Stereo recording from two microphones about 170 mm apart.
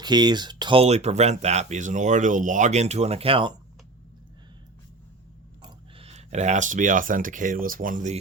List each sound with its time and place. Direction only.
0.0 s speech: 25° right (ahead or behind)
5.6 s speech: 35° right (ahead or behind)